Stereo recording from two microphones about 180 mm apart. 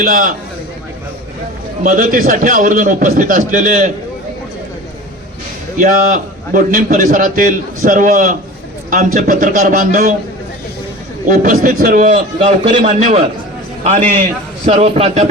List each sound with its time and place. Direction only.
0.0 s a man's voice: 50° right (ahead or behind)
1.8 s a man's voice: 50° right (ahead or behind)
5.7 s a man's voice: 50° right (ahead or behind)
11.3 s a man's voice: 50° right (ahead or behind)
14.6 s a man's voice: 35° right (ahead or behind)